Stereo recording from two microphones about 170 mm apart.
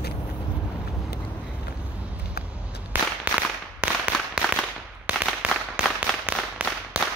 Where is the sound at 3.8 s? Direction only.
5° right (ahead or behind).